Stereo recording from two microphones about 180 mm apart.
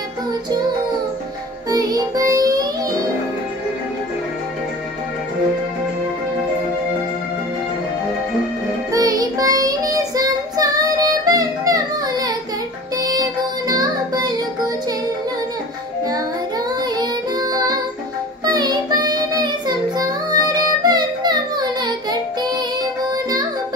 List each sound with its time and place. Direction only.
1.7 s music: 20° right (ahead or behind)
8.9 s child singing: 20° right (ahead or behind)
12.9 s music: 20° right (ahead or behind)
16.1 s child singing: 20° right (ahead or behind)
20.0 s music: 20° right (ahead or behind)